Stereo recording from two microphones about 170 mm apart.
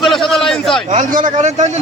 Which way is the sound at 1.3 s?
45° right (ahead or behind).